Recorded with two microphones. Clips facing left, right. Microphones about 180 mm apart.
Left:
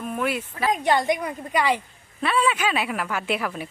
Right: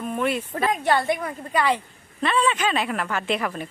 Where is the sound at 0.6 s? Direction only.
15° left (ahead or behind).